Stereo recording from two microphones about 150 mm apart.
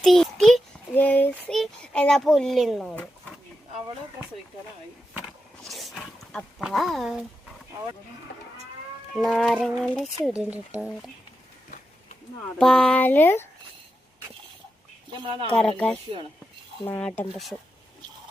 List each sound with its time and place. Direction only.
0.0 s child singing: centre (ahead or behind)
1.5 s a sound: 5° left (ahead or behind)
5.6 s speech: centre (ahead or behind)
9.1 s a sound: 5° left (ahead or behind)
10.2 s speech: 10° right (ahead or behind)
12.5 s speech: 5° left (ahead or behind)
15.1 s speech: 35° right (ahead or behind)
15.5 s speech: 5° left (ahead or behind)
17.2 s a sound: centre (ahead or behind)